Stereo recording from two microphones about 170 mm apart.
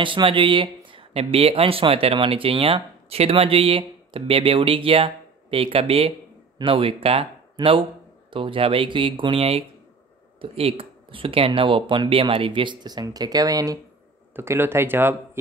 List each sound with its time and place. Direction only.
0.0 s speech: 30° right (ahead or behind); by 15.1 s 15° right (ahead or behind)